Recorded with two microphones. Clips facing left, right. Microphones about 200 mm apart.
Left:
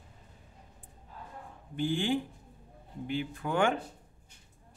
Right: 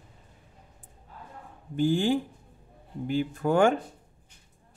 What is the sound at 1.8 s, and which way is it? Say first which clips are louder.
Speech: right 6 dB; 40° right (ahead or behind).